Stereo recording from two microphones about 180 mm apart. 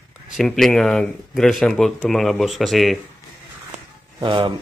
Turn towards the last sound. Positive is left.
turn(degrees=-30)  # may be behind; listen again after turning